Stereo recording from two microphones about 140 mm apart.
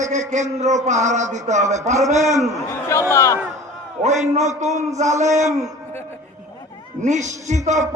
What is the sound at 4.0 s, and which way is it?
A man's voice, 55° right (ahead or behind).